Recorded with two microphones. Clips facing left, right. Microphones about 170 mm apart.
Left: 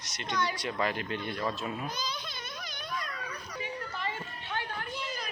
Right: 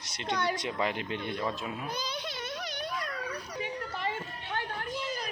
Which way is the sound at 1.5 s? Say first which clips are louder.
Left 1 dB; 5° right (ahead or behind).